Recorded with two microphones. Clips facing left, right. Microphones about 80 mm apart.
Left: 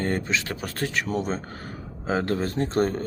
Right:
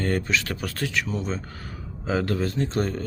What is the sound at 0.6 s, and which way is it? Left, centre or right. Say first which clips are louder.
Speech: even; left.